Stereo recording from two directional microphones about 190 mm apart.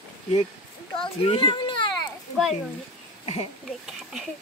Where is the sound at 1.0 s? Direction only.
25° left (ahead or behind).